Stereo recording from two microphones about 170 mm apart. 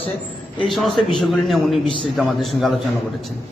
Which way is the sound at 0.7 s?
Centre (ahead or behind).